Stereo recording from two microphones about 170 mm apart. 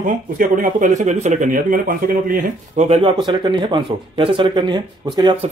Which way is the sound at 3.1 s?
25° right (ahead or behind).